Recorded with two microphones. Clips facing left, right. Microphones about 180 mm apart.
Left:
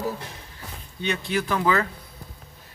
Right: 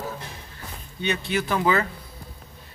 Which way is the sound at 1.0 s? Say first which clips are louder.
Even; centre (ahead or behind).